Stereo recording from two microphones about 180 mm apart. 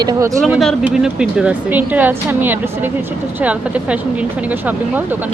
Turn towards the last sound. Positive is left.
turn(degrees=-10)  # may be behind; listen again after turning